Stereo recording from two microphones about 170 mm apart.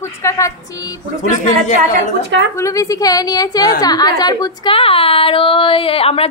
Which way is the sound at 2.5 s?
20° left (ahead or behind).